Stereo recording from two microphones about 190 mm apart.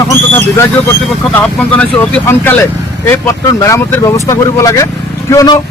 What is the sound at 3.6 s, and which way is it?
Speech, 15° left (ahead or behind).